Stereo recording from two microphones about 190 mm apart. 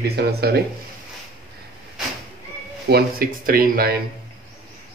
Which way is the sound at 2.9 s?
55° right (ahead or behind).